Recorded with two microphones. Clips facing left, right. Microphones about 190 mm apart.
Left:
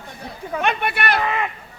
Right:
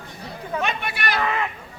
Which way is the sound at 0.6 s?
60° left (ahead or behind).